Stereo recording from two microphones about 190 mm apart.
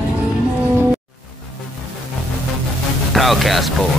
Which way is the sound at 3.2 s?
Centre (ahead or behind).